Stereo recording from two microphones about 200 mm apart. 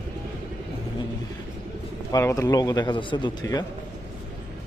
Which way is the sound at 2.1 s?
15° left (ahead or behind).